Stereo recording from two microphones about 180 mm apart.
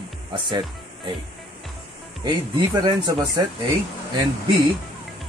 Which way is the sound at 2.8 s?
20° right (ahead or behind).